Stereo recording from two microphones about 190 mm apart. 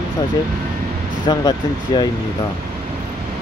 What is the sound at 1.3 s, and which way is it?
Speech, 20° left (ahead or behind).